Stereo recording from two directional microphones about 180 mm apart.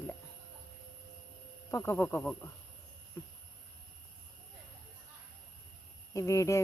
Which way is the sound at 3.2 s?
20° left (ahead or behind).